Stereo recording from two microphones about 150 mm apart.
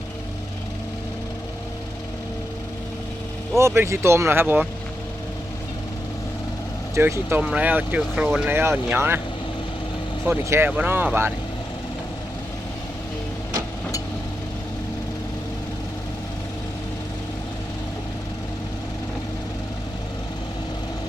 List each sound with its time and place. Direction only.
3.6 s speech: 20° right (ahead or behind)
6.9 s speech: 15° right (ahead or behind)
10.2 s speech: 15° right (ahead or behind)